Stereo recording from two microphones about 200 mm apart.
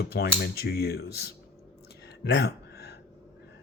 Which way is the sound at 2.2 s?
55° left (ahead or behind).